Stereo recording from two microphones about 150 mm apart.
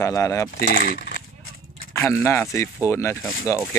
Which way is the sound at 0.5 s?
90° left.